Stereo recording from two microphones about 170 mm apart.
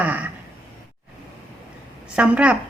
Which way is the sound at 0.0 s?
10° right (ahead or behind).